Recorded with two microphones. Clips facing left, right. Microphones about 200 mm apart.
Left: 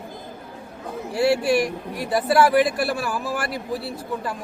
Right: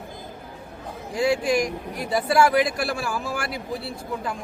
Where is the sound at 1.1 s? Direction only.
5° left (ahead or behind).